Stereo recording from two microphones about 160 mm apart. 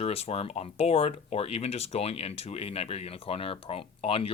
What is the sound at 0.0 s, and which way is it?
Speech, 40° left (ahead or behind).